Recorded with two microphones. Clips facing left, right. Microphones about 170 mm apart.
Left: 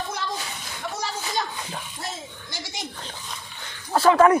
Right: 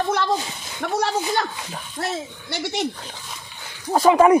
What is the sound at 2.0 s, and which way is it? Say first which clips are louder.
Speech: right 8 dB; 65° right (ahead or behind).